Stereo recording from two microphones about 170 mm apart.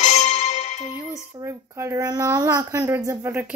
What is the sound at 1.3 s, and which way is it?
A woman's voice, 15° right (ahead or behind).